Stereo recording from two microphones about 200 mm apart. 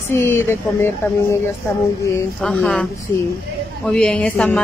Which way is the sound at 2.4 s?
Centre (ahead or behind).